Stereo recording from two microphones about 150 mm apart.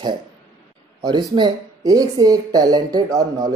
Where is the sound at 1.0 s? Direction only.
30° right (ahead or behind).